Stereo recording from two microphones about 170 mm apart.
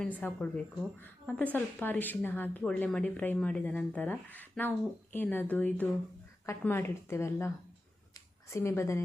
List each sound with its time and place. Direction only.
0.0 s a woman's voice: 10° left (ahead or behind)